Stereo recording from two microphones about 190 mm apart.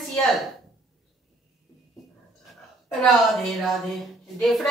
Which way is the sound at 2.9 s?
Centre (ahead or behind).